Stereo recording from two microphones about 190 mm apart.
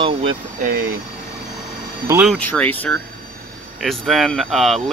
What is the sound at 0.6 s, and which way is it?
Speech, 45° right (ahead or behind).